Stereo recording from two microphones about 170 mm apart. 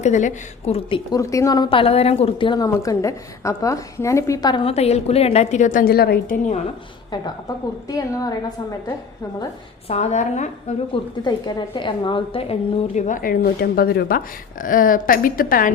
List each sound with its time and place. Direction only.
0.0 s a woman's voice: 45° left (ahead or behind)
1.2 s a woman's voice: 20° left (ahead or behind); by 6.3 s 65° left (ahead or behind)
7.9 s a woman's voice: 20° left (ahead or behind)
9.9 s a woman's voice: 40° left (ahead or behind)
11.2 s a woman's voice: 25° left (ahead or behind); by 14.2 s 65° left (ahead or behind)
14.6 s a woman's voice: 55° left (ahead or behind)